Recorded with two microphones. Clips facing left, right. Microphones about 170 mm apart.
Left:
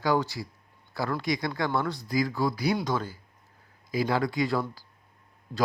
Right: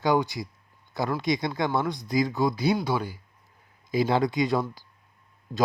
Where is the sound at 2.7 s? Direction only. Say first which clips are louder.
Right 2 dB; 10° right (ahead or behind).